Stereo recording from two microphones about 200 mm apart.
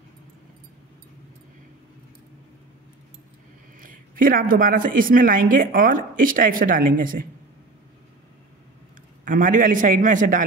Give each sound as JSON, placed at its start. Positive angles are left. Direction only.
{"t": 3.8, "sound": "a woman's voice", "side_deg": -45}
{"t": 9.2, "sound": "a man's voice", "side_deg": -40}